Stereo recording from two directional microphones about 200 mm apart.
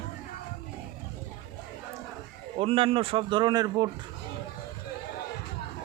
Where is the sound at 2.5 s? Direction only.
30° right (ahead or behind).